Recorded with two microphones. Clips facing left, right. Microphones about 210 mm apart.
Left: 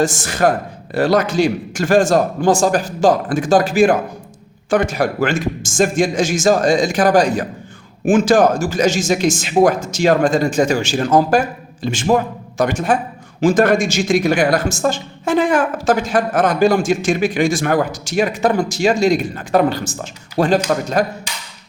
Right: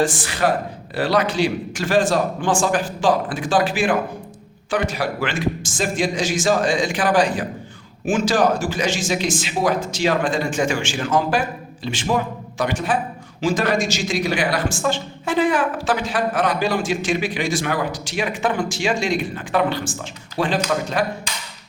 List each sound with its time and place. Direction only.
0.0 s speech: 45° left (ahead or behind)